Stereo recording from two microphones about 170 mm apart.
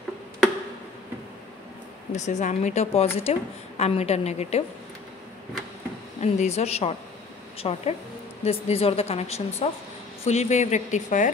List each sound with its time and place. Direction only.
2.1 s a woman's voice: 45° left (ahead or behind)
6.2 s a woman's voice: 40° left (ahead or behind)